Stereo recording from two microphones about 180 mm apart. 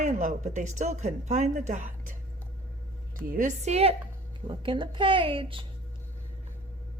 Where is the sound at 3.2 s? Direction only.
50° right (ahead or behind); by 5.6 s 30° right (ahead or behind).